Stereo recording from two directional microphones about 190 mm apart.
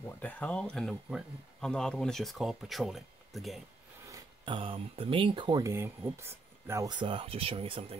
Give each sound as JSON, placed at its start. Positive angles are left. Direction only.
{"t": 0.2, "sound": "speech", "side_deg": 5}
{"t": 4.1, "sound": "speech", "side_deg": -25}